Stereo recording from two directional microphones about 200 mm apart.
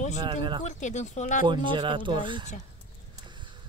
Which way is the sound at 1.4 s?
25° right (ahead or behind).